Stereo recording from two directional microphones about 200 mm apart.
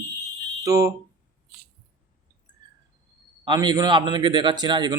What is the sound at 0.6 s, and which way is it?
Speech, 15° right (ahead or behind).